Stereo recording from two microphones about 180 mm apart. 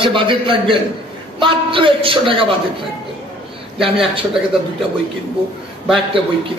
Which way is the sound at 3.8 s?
30° right (ahead or behind).